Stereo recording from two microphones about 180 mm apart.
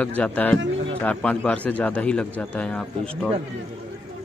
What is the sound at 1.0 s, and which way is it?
Speech, 5° left (ahead or behind).